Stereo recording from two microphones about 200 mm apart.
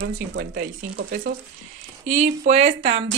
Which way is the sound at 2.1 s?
35° right (ahead or behind).